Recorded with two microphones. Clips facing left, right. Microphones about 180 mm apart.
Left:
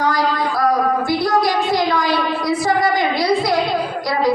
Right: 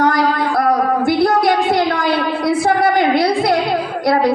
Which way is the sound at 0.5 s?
55° right (ahead or behind).